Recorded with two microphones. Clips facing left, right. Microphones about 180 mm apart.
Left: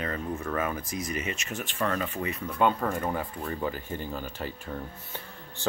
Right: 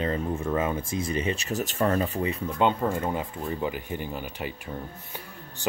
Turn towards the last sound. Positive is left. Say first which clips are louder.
# right 1 dB
turn(degrees=-15)  # may be behind; listen again after turning